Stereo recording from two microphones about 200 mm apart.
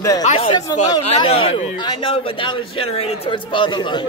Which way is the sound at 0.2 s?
30° left (ahead or behind).